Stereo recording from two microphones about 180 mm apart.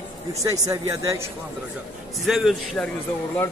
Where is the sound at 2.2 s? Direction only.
Centre (ahead or behind).